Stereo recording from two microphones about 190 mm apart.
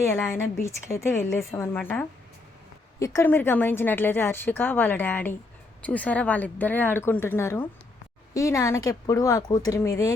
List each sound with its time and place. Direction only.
0.2 s a woman's voice: 10° left (ahead or behind)